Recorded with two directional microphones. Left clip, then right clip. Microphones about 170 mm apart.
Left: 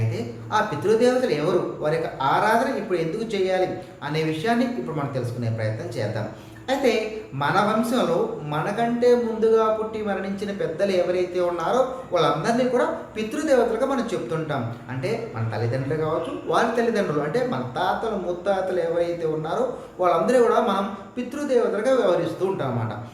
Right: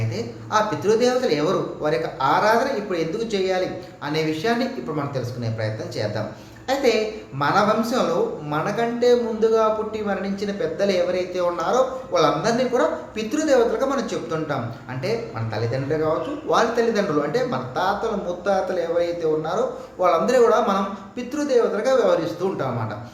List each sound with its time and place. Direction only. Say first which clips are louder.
0.5 s a man's voice: right 1 dB; 10° right (ahead or behind)
15.5 s a man's voice: right 3 dB; 10° right (ahead or behind)